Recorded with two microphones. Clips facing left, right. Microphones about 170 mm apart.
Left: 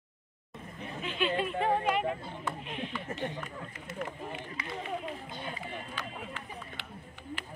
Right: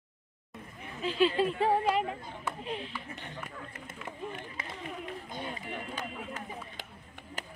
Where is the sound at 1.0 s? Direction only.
35° right (ahead or behind).